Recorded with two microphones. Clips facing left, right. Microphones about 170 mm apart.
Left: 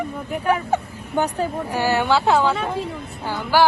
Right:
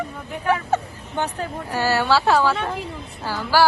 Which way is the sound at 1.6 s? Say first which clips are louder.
Right 1 dB; 15° left (ahead or behind).